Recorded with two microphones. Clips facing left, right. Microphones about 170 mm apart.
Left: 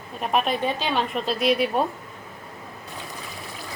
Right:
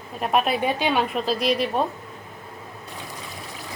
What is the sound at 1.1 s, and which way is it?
Speech, centre (ahead or behind).